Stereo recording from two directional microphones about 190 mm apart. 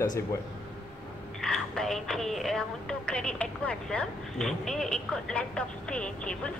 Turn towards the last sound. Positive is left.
turn(degrees=5)  # may be behind; listen again after turning